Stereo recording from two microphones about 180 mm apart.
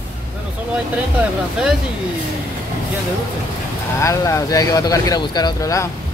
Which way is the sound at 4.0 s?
15° left (ahead or behind).